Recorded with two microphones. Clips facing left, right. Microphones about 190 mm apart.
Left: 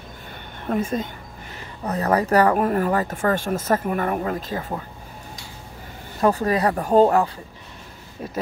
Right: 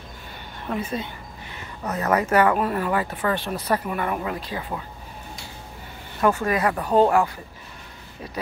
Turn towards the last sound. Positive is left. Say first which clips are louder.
# left 2 dB
turn(degrees=40)  # may be behind; listen again after turning